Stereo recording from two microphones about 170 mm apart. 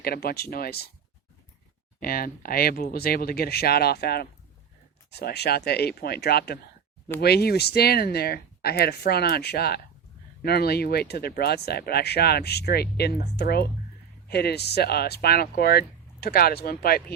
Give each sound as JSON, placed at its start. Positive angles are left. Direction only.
{"t": 0.0, "sound": "speech", "side_deg": 65}
{"t": 2.0, "sound": "speech", "side_deg": 60}